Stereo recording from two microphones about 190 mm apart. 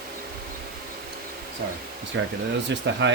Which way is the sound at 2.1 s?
75° right (ahead or behind).